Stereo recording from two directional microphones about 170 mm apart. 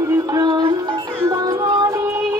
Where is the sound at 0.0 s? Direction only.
20° right (ahead or behind).